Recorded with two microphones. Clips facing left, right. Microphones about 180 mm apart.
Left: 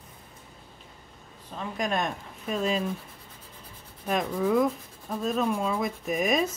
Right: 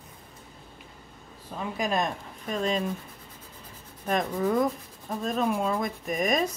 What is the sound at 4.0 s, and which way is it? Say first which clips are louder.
Speech: even; 5° left (ahead or behind).